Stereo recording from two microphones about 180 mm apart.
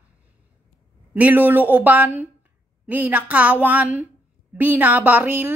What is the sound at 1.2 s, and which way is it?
A woman's voice, 10° right (ahead or behind).